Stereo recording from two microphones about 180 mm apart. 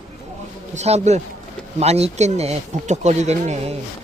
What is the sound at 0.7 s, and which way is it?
Speech, 40° right (ahead or behind).